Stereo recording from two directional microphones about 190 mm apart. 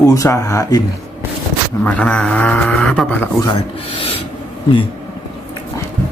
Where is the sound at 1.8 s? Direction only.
5° left (ahead or behind).